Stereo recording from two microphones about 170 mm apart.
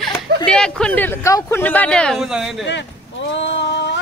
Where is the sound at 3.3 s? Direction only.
90° left.